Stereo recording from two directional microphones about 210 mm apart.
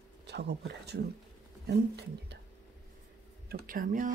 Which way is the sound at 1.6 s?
50° right (ahead or behind).